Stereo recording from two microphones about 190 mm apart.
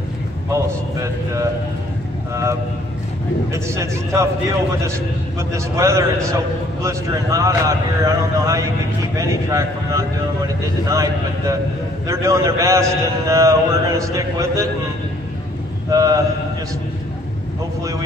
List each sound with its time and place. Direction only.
0.5 s a man's voice: 15° right (ahead or behind)
3.5 s a man's voice: 15° right (ahead or behind)
5.5 s a man's voice: 15° right (ahead or behind)
15.9 s a man's voice: 20° right (ahead or behind)